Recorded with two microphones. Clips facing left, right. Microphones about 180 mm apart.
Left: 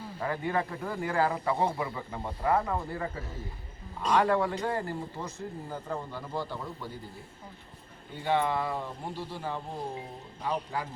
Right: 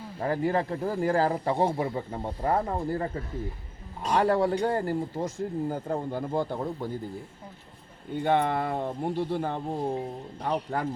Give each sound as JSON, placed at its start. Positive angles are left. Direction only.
{"t": 0.2, "sound": "speech", "side_deg": -35}
{"t": 4.1, "sound": "speech", "side_deg": -35}
{"t": 8.1, "sound": "speech", "side_deg": -55}